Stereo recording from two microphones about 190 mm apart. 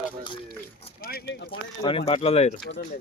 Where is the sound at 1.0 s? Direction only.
50° left (ahead or behind).